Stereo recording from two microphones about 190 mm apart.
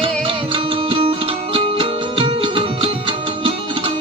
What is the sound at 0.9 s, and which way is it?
Music, 30° right (ahead or behind).